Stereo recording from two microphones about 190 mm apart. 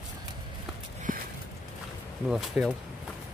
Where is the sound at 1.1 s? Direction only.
45° right (ahead or behind).